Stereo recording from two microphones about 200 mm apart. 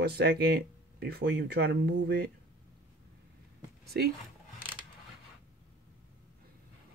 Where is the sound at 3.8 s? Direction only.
50° right (ahead or behind).